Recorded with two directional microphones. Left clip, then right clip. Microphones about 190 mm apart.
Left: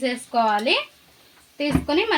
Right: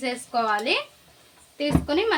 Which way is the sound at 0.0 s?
35° left (ahead or behind).